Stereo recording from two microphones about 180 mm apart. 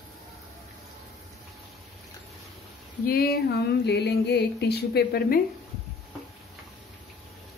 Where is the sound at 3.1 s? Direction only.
55° left (ahead or behind).